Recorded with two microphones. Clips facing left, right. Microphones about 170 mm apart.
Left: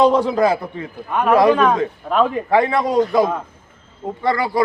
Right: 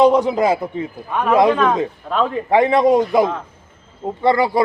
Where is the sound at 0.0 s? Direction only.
20° right (ahead or behind).